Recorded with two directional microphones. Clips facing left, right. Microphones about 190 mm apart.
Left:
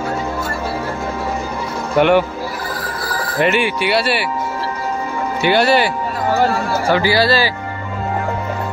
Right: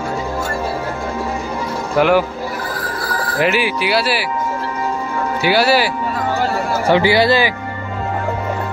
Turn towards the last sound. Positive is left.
turn(degrees=-20)  # may be behind; listen again after turning